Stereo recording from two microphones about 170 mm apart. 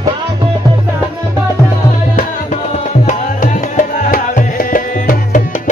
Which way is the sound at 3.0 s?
50° left (ahead or behind).